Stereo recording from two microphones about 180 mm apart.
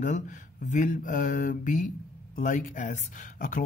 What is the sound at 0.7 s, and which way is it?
Speech, 45° left (ahead or behind).